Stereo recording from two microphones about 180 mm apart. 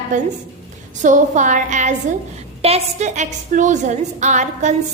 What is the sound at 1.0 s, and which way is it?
A woman's voice, 45° right (ahead or behind).